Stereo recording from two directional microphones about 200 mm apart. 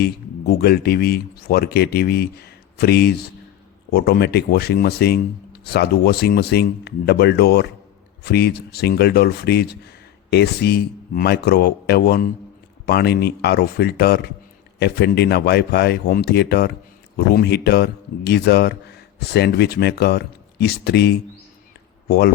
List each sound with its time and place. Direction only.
0.0 s speech: 50° left (ahead or behind)